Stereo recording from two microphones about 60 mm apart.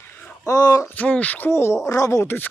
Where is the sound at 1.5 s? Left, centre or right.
Left.